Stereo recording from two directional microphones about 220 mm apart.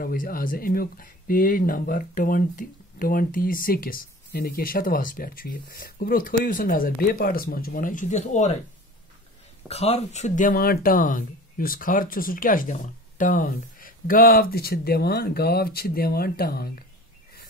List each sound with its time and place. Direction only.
0.0 s speech: 40° left (ahead or behind)
9.7 s speech: 30° left (ahead or behind); by 16.7 s 45° left (ahead or behind)